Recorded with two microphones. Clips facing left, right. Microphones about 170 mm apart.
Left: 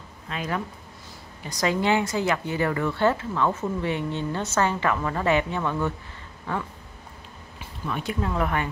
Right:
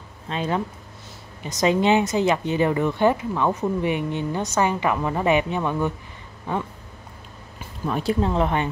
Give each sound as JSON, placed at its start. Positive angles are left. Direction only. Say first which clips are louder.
{"t": 0.3, "sound": "speech", "louder": "right 5 dB", "side_deg": -25}
{"t": 7.8, "sound": "speech", "louder": "right 6 dB", "side_deg": -35}